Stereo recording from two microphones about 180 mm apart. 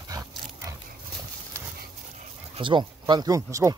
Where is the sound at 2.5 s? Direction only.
25° right (ahead or behind).